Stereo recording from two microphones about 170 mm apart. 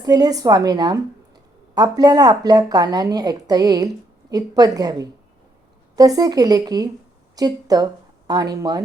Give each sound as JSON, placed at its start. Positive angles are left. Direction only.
{"t": 0.0, "sound": "speech", "side_deg": -20}